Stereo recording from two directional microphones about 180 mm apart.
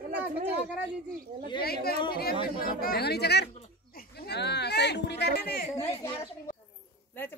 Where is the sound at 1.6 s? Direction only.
60° left (ahead or behind).